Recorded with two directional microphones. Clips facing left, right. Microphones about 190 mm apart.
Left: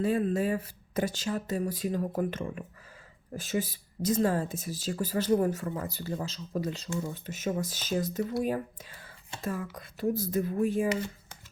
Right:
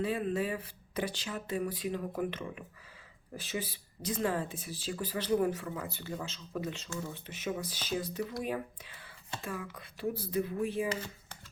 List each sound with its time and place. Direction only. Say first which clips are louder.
0.0 s speech: left 5 dB; 45° left (ahead or behind)